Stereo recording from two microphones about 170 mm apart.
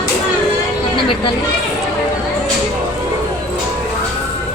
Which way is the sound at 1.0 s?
30° left (ahead or behind).